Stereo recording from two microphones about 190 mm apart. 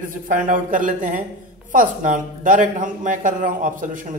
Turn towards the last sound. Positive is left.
turn(degrees=-45)  # may be behind; listen again after turning